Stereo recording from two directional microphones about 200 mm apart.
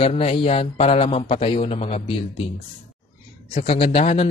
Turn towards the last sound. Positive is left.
turn(degrees=30)  # may be behind; listen again after turning